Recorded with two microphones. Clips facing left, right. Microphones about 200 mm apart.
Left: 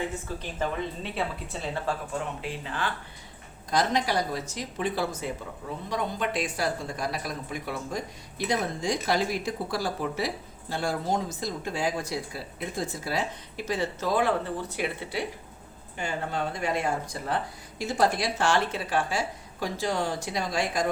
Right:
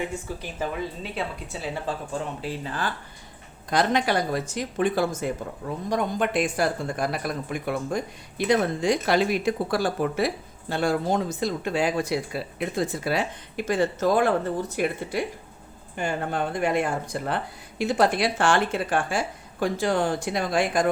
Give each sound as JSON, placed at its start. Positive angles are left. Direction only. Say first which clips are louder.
{"t": 0.0, "sound": "speech", "louder": "right 2 dB", "side_deg": -10}
{"t": 2.4, "sound": "speech", "louder": "right 3 dB", "side_deg": -40}
{"t": 3.7, "sound": "a woman's voice", "louder": "right 3 dB", "side_deg": -60}